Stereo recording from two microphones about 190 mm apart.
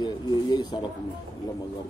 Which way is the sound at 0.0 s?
20° left (ahead or behind).